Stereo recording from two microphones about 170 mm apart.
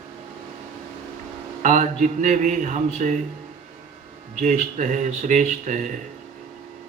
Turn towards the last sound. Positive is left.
turn(degrees=-50)  # may be behind; listen again after turning